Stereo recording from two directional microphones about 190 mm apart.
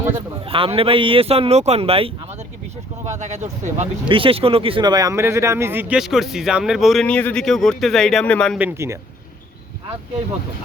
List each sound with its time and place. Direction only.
0.4 s speech: 30° right (ahead or behind); by 8.5 s 5° left (ahead or behind)
8.5 s speech: 10° right (ahead or behind)